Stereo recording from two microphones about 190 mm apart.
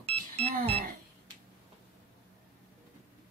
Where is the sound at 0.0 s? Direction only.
30° right (ahead or behind).